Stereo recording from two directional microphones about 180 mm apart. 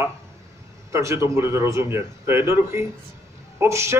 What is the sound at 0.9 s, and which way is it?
Speech, 15° right (ahead or behind).